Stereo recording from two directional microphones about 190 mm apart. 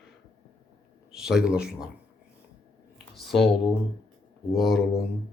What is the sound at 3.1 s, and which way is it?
Speech, centre (ahead or behind).